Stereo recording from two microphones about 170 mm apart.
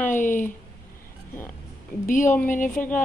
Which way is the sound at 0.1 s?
50° left (ahead or behind).